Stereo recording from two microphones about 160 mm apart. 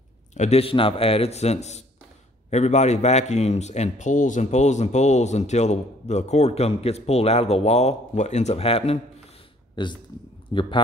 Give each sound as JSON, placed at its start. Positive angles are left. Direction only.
{"t": 0.3, "sound": "a man's voice", "side_deg": 45}